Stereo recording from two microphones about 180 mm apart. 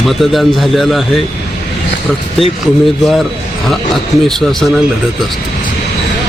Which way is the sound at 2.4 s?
Centre (ahead or behind).